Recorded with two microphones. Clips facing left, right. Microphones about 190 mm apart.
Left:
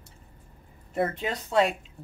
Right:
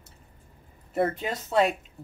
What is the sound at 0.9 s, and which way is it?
Speech, centre (ahead or behind).